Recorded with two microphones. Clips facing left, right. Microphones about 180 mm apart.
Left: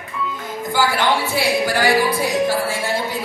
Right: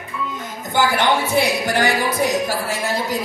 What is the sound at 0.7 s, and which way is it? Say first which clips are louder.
Speech: right 1 dB; 20° right (ahead or behind).